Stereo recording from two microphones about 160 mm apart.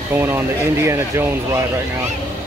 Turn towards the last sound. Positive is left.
turn(degrees=-15)  # may be behind; listen again after turning